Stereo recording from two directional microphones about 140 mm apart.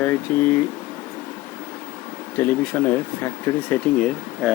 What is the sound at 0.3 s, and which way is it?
Speech, 15° left (ahead or behind).